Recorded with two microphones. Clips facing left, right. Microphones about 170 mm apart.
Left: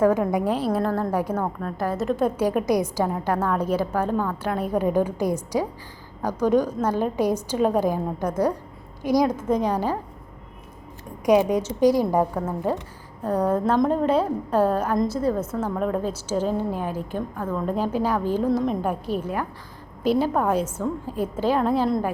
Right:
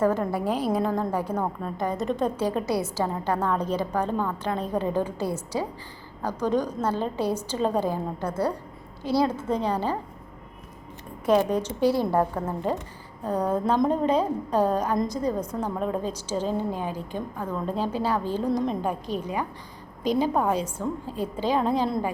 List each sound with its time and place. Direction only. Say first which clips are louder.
0.0 s a woman's voice: left 4 dB; 10° left (ahead or behind)
11.3 s a woman's voice: left 3 dB; 10° left (ahead or behind)
13.7 s a woman's voice: left 1 dB; centre (ahead or behind)
15.5 s a woman's voice: left 3 dB; 5° right (ahead or behind)
16.0 s a woman's voice: left 3 dB; 5° left (ahead or behind)
17.3 s a woman's voice: left 3 dB; 5° right (ahead or behind)
17.7 s a woman's voice: left 2 dB; 10° left (ahead or behind)